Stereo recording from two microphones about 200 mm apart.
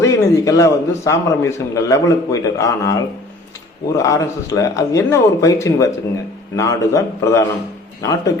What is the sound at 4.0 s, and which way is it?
A man's voice, 15° left (ahead or behind).